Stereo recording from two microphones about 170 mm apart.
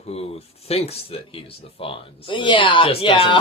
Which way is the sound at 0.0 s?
35° left (ahead or behind).